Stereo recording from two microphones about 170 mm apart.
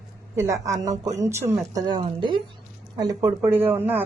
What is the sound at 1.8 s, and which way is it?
Speech, 25° right (ahead or behind).